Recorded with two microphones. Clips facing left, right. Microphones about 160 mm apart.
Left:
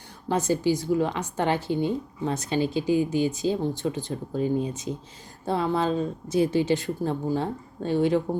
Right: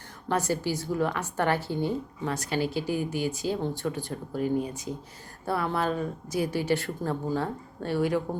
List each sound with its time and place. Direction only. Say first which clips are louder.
0.3 s speech: left 4 dB; 20° left (ahead or behind)